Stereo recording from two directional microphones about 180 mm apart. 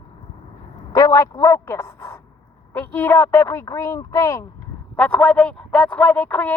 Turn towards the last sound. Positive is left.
turn(degrees=10)  # may be behind; listen again after turning